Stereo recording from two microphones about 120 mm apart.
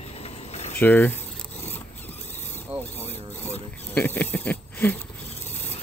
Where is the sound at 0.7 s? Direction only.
15° left (ahead or behind).